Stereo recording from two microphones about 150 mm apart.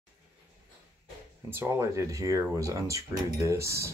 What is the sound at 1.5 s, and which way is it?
Speech, 15° right (ahead or behind).